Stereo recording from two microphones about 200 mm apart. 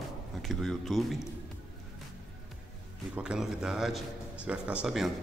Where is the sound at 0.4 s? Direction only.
Centre (ahead or behind).